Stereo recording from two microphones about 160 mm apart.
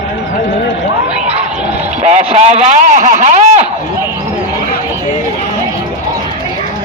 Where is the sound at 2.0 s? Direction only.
40° right (ahead or behind).